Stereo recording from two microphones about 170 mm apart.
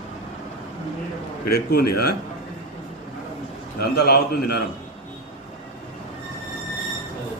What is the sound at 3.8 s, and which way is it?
Speech, 70° left (ahead or behind).